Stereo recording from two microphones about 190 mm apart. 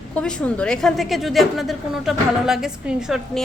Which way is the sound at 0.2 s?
5° left (ahead or behind).